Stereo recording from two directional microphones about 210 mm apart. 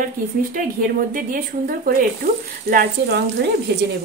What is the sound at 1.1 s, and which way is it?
A woman's voice, 40° right (ahead or behind).